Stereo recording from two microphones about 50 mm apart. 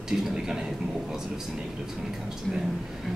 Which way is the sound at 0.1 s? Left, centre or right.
Centre.